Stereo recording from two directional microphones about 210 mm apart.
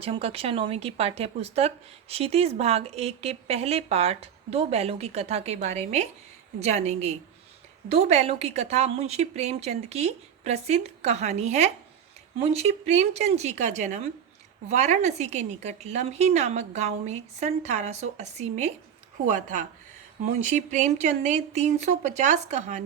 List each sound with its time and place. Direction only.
0.0 s a woman's voice: 25° right (ahead or behind)